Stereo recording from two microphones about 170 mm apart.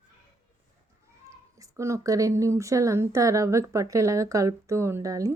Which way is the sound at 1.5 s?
20° right (ahead or behind).